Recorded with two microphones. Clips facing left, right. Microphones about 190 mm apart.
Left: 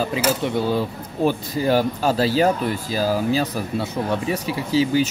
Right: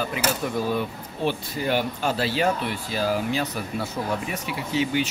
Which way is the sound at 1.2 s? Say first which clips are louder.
Left 6 dB; 40° left (ahead or behind).